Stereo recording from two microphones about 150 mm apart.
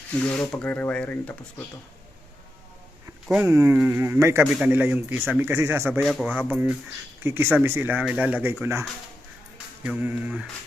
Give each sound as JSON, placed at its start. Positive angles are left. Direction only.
{"t": 0.1, "sound": "rub", "side_deg": 10}
{"t": 3.4, "sound": "speech", "side_deg": -20}
{"t": 5.9, "sound": "speech", "side_deg": 0}
{"t": 9.8, "sound": "speech", "side_deg": -10}